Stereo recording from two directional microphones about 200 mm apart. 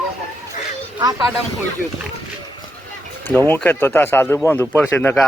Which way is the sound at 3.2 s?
10° left (ahead or behind).